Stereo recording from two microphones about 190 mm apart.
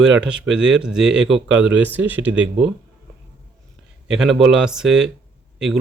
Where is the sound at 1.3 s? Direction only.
85° right.